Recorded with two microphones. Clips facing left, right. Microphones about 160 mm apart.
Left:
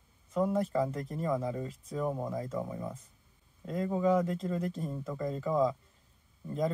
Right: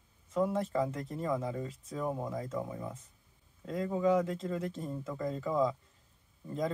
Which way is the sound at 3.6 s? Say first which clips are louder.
Left 1 dB; 40° left (ahead or behind).